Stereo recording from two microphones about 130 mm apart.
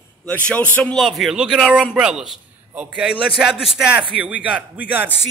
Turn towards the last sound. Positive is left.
turn(degrees=-10)  # may be behind; listen again after turning